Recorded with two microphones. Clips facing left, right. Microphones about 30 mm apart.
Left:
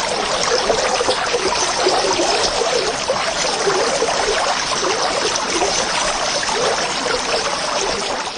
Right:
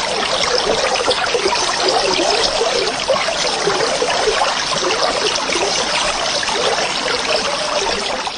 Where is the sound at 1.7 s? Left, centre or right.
Right.